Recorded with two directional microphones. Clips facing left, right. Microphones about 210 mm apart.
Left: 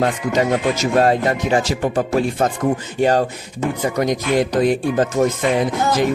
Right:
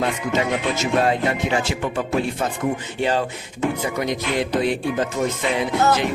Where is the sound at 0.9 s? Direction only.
40° left (ahead or behind).